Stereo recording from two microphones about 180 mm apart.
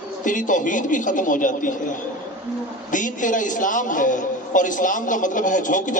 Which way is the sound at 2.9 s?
45° left (ahead or behind).